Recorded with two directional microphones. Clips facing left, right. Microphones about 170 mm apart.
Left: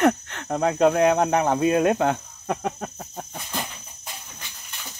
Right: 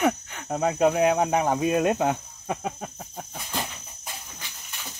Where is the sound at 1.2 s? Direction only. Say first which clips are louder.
Left 2 dB; 65° left (ahead or behind).